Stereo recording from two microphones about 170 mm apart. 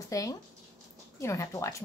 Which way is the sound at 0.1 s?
20° left (ahead or behind).